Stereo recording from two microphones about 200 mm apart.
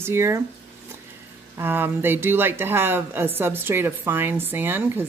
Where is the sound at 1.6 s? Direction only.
10° right (ahead or behind).